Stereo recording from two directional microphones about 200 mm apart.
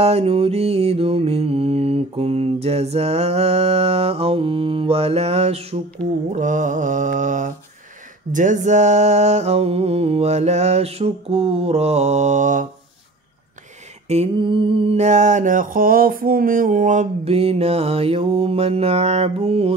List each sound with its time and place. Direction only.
0.0 s music: 30° right (ahead or behind)
14.0 s music: 30° right (ahead or behind)